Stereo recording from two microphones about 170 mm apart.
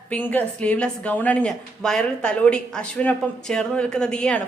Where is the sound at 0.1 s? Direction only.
10° left (ahead or behind).